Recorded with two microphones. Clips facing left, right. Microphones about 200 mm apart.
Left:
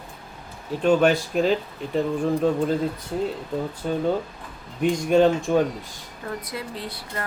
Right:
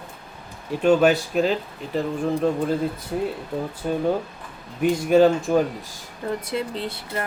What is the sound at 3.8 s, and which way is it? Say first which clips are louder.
Speech: right 2 dB; 5° right (ahead or behind).